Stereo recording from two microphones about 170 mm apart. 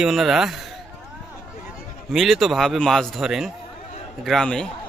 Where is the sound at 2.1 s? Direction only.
Centre (ahead or behind).